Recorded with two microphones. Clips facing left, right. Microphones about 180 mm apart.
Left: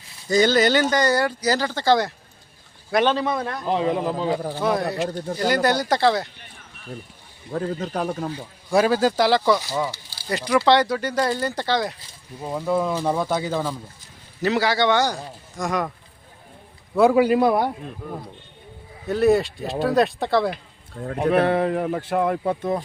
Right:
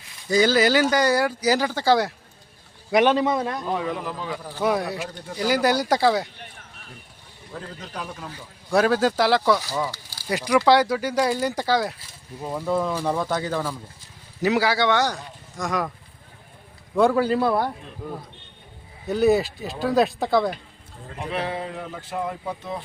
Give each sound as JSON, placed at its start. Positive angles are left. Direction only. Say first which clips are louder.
{"t": 0.3, "sound": "speech", "louder": "left 1 dB", "side_deg": -5}
{"t": 3.7, "sound": "speech", "louder": "left 5 dB", "side_deg": 20}
{"t": 4.6, "sound": "speech", "louder": "right 1 dB", "side_deg": -10}
{"t": 5.0, "sound": "a man's voice", "louder": "left 8 dB", "side_deg": 40}
{"t": 5.5, "sound": "speech", "louder": "even", "side_deg": -10}
{"t": 7.5, "sound": "a man's voice", "louder": "left 10 dB", "side_deg": 50}
{"t": 8.7, "sound": "speech", "louder": "left 1 dB", "side_deg": 0}
{"t": 14.4, "sound": "speech", "louder": "left 1 dB", "side_deg": -10}
{"t": 16.9, "sound": "speech", "louder": "left 3 dB", "side_deg": 10}
{"t": 19.0, "sound": "speech", "louder": "left 1 dB", "side_deg": 0}
{"t": 20.9, "sound": "speech", "louder": "left 10 dB", "side_deg": 65}